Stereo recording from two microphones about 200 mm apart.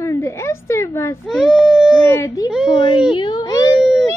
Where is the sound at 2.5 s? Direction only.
5° right (ahead or behind).